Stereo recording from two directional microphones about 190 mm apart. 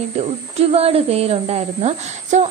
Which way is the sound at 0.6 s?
30° right (ahead or behind).